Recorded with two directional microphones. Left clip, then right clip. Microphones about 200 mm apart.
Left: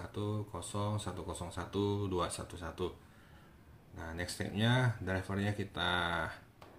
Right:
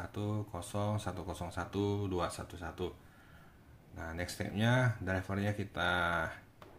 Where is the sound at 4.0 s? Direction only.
10° right (ahead or behind).